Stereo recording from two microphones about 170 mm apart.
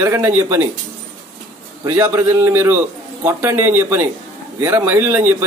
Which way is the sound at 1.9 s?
15° right (ahead or behind).